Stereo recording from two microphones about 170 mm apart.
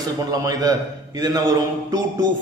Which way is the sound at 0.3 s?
20° right (ahead or behind).